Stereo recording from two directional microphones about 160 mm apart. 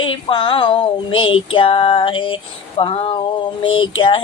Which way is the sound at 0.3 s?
30° left (ahead or behind).